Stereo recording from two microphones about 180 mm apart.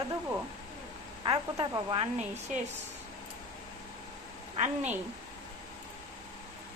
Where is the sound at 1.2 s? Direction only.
25° right (ahead or behind).